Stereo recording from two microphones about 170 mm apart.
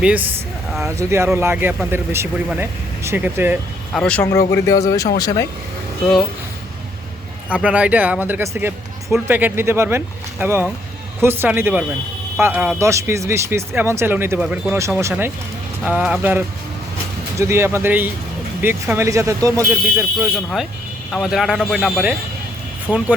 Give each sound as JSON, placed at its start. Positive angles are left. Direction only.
{"t": 0.0, "sound": "speech", "side_deg": -10}
{"t": 3.9, "sound": "speech", "side_deg": 5}
{"t": 4.3, "sound": "speech", "side_deg": 15}
{"t": 7.5, "sound": "speech", "side_deg": -5}
{"t": 17.4, "sound": "speech", "side_deg": -15}
{"t": 19.7, "sound": "speech", "side_deg": -5}